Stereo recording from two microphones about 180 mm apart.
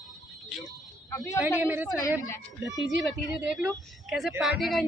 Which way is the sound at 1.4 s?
10° right (ahead or behind).